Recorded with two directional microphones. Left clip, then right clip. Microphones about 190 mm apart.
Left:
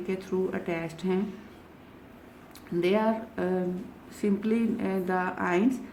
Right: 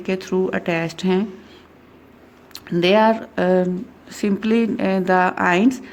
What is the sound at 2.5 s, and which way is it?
A woman's voice, 45° right (ahead or behind).